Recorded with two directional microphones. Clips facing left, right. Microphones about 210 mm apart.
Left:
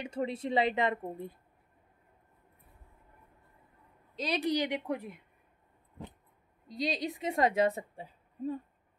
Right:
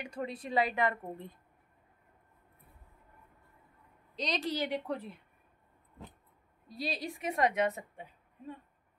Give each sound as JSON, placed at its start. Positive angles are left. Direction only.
{"t": 0.0, "sound": "a woman's voice", "side_deg": 25}
{"t": 1.1, "sound": "speech", "side_deg": 10}
{"t": 4.1, "sound": "a sound", "side_deg": 5}
{"t": 4.4, "sound": "speech", "side_deg": 15}
{"t": 6.7, "sound": "a woman's voice", "side_deg": 20}